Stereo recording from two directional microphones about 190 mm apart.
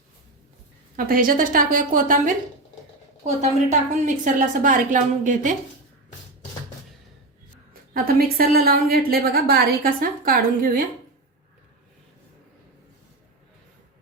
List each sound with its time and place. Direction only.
0.9 s a woman's voice: 50° right (ahead or behind)
7.7 s a woman's voice: 50° right (ahead or behind)